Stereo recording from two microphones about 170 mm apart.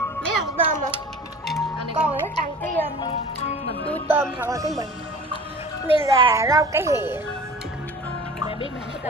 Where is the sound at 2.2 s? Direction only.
10° left (ahead or behind).